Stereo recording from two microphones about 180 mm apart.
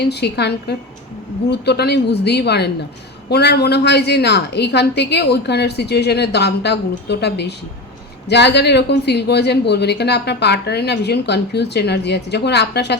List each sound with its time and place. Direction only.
0.0 s speech: 70° left (ahead or behind)